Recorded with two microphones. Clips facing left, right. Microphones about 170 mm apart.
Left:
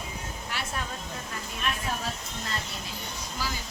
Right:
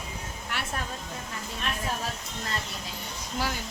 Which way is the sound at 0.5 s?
60° right (ahead or behind).